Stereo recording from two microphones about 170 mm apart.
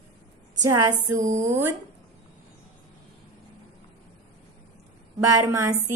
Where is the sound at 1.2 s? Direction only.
45° right (ahead or behind).